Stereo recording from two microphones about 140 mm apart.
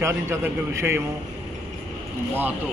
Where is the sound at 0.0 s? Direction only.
15° right (ahead or behind).